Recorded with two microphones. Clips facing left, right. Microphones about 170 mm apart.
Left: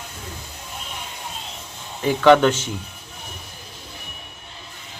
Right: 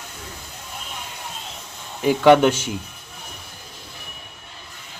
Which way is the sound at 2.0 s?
10° right (ahead or behind).